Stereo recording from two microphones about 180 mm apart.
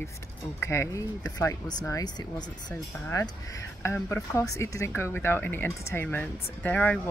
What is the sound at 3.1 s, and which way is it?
Speech, 20° left (ahead or behind).